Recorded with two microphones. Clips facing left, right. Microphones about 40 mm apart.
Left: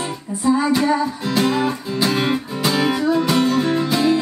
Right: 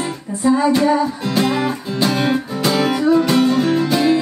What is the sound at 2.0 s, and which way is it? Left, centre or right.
Music, centre.